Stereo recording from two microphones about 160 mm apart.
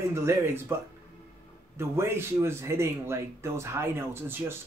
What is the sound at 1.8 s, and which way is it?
Speech, 15° right (ahead or behind).